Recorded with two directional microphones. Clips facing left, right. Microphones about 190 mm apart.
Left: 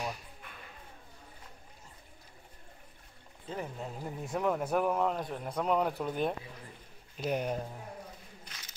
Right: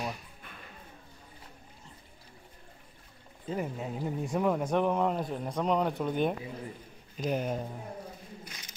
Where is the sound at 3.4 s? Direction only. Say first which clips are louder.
Right 5 dB; 5° right (ahead or behind).